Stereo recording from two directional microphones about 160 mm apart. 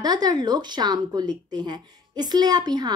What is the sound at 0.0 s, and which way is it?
Speech, 25° right (ahead or behind).